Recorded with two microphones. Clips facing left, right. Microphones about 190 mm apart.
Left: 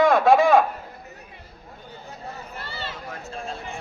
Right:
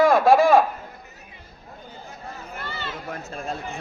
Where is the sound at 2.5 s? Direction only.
35° left (ahead or behind).